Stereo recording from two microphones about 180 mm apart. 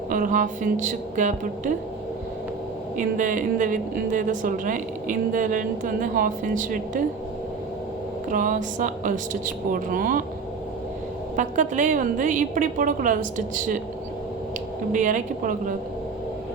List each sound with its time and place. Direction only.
0.1 s a woman's voice: 45° right (ahead or behind)
3.0 s a woman's voice: 45° right (ahead or behind)
8.3 s a woman's voice: 45° right (ahead or behind)
11.3 s a woman's voice: 45° right (ahead or behind)
14.9 s a woman's voice: 45° right (ahead or behind)